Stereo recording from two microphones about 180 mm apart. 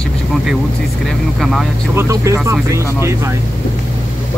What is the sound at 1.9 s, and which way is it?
Speech, 15° right (ahead or behind).